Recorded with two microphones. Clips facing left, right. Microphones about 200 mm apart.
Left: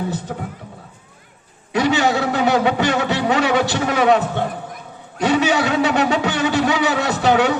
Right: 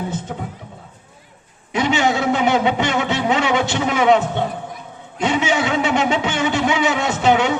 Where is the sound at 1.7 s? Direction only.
20° right (ahead or behind).